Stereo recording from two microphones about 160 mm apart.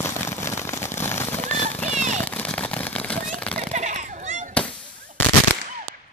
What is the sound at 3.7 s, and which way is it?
Children playing, 45° right (ahead or behind).